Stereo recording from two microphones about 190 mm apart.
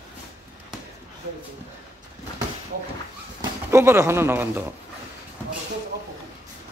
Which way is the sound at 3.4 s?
15° right (ahead or behind).